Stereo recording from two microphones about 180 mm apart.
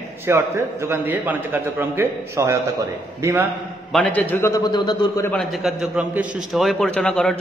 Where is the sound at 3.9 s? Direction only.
5° left (ahead or behind); by 5.3 s 20° left (ahead or behind).